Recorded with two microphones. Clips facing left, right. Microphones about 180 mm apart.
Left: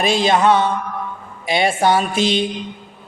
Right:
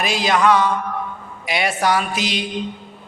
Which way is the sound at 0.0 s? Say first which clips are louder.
Left 3 dB; 25° left (ahead or behind).